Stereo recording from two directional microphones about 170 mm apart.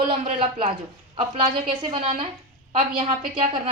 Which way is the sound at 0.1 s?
35° right (ahead or behind).